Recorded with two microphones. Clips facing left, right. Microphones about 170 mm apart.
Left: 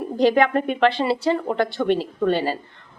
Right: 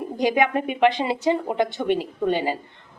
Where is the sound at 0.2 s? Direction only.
15° right (ahead or behind).